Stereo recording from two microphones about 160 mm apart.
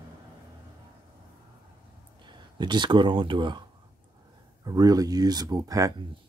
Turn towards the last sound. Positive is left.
turn(degrees=-20)  # may be behind; listen again after turning